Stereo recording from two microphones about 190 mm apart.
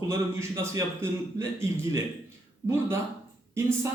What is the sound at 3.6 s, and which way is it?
Speech, 15° right (ahead or behind).